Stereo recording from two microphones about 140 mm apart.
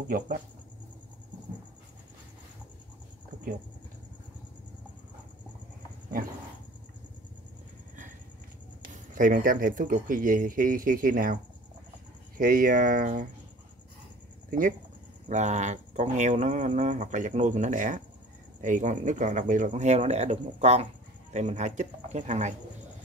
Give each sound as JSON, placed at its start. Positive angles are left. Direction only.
{"t": 0.1, "sound": "speech", "side_deg": -90}
{"t": 9.1, "sound": "speech", "side_deg": -75}
{"t": 12.4, "sound": "speech", "side_deg": -85}
{"t": 15.2, "sound": "speech", "side_deg": -55}